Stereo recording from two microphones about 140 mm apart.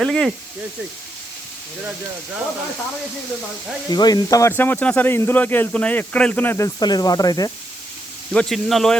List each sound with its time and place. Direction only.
0.0 s speech: centre (ahead or behind)
3.8 s speech: 30° left (ahead or behind)
4.5 s speech: 15° left (ahead or behind)
6.7 s speech: 30° left (ahead or behind)
8.3 s speech: 5° left (ahead or behind)